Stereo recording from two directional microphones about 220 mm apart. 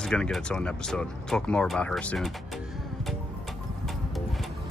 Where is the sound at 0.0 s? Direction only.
5° left (ahead or behind).